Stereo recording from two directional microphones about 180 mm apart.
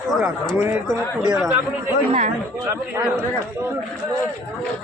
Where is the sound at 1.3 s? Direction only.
5° right (ahead or behind).